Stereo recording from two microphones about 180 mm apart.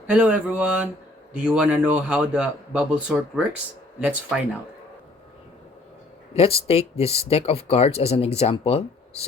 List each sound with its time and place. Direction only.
0.1 s speech: 5° right (ahead or behind)
6.3 s speech: 30° left (ahead or behind)